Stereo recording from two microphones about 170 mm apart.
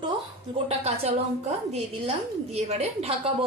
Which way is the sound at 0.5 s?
40° right (ahead or behind).